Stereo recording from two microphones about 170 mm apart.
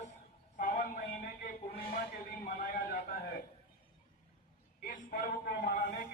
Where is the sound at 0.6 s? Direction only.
50° left (ahead or behind).